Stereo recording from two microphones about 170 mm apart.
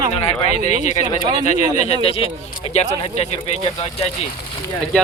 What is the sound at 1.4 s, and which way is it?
Speech, 40° left (ahead or behind).